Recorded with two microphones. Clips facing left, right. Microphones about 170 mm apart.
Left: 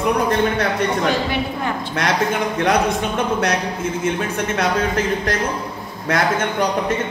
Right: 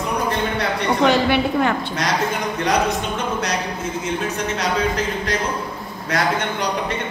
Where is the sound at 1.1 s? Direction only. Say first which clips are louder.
Right 3 dB; 70° right (ahead or behind).